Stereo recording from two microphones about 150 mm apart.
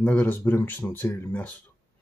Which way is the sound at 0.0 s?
10° left (ahead or behind).